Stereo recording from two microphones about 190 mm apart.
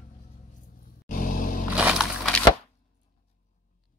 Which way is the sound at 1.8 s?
5° right (ahead or behind).